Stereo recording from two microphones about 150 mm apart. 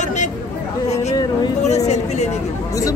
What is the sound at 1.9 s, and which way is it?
Speech, 50° left (ahead or behind).